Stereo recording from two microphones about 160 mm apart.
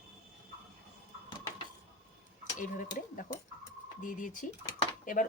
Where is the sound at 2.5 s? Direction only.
55° left (ahead or behind).